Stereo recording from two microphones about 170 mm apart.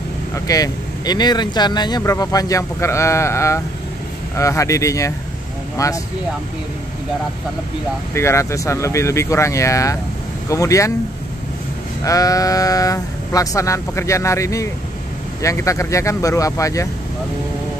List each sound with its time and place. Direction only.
0.5 s speech: 20° left (ahead or behind)
8.1 s speech: 15° left (ahead or behind)
12.0 s speech: 20° left (ahead or behind)